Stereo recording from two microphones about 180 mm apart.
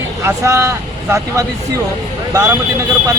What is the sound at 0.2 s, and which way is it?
Speech, 15° right (ahead or behind).